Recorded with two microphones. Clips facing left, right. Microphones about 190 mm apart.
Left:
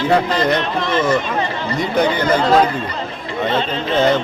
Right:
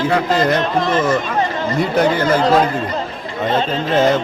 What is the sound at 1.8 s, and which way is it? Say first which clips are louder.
Speech: right 1 dB; 5° right (ahead or behind).